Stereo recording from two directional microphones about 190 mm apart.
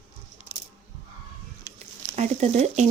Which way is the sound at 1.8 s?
35° right (ahead or behind).